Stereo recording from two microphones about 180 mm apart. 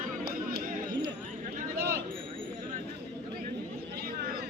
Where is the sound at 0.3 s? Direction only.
55° right (ahead or behind).